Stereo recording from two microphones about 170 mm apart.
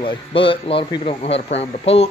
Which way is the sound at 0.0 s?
30° left (ahead or behind).